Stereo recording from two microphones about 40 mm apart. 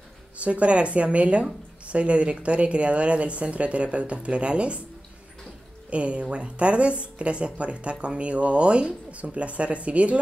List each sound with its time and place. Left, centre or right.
0.4 s speech: right
5.9 s speech: right